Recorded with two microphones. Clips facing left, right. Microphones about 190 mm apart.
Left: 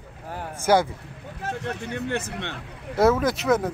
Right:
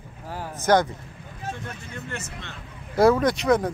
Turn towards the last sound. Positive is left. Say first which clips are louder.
# right 1 dB
turn(degrees=5)  # may be behind; listen again after turning